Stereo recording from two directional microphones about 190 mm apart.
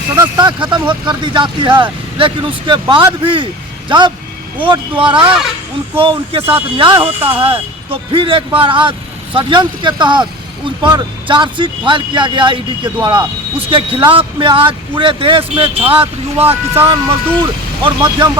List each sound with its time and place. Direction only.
0.7 s speech: 25° right (ahead or behind)